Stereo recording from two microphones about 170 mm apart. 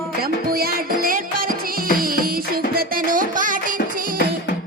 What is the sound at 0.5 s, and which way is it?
Music, 60° right (ahead or behind).